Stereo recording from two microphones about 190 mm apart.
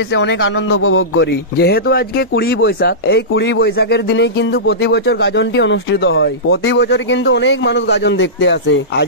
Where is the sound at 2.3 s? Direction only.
70° left (ahead or behind).